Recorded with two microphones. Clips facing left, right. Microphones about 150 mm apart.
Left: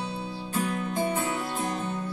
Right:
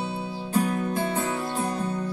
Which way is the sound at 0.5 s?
40° right (ahead or behind).